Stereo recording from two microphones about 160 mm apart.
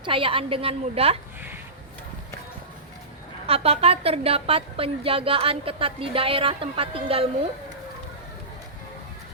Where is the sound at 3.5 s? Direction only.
40° right (ahead or behind).